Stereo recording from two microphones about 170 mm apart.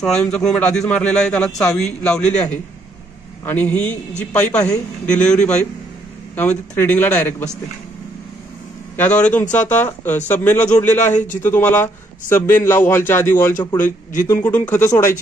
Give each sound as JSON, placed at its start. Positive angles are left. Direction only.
{"t": 0.0, "sound": "a man's voice", "side_deg": 5}
{"t": 3.4, "sound": "a man's voice", "side_deg": 10}
{"t": 8.9, "sound": "a man's voice", "side_deg": 10}
{"t": 10.9, "sound": "speech", "side_deg": 45}
{"t": 11.4, "sound": "a man's voice", "side_deg": 10}